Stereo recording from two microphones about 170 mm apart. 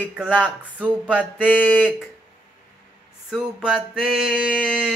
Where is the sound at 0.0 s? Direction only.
5° left (ahead or behind).